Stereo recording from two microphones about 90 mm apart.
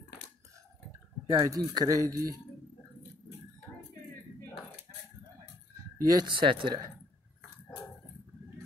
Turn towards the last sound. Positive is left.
turn(degrees=-65)  # may be behind; listen again after turning